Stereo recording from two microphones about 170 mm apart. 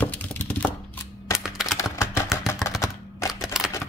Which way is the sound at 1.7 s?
15° left (ahead or behind).